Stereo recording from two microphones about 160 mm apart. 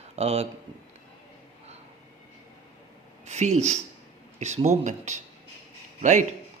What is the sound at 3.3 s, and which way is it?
A man's voice, 45° right (ahead or behind).